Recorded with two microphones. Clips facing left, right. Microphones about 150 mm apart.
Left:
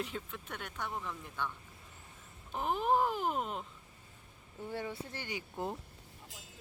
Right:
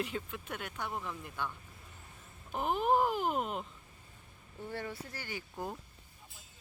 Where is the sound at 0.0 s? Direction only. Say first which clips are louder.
Right 2 dB; centre (ahead or behind).